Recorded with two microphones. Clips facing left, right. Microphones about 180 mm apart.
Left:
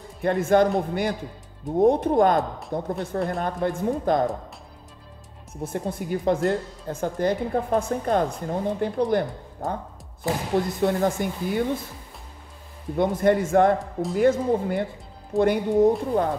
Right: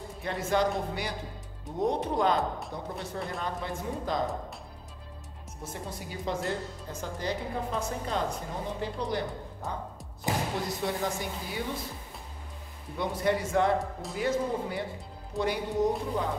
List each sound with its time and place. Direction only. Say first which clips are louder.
0.2 s speech: left 9 dB; 50° left (ahead or behind)
5.6 s a woman's voice: left 10 dB; 55° left (ahead or behind)
12.9 s a woman's voice: left 8 dB; 50° left (ahead or behind)